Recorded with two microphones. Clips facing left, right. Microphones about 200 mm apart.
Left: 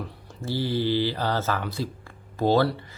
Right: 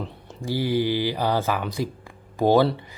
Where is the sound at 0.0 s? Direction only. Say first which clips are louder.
Right 2 dB; 15° right (ahead or behind).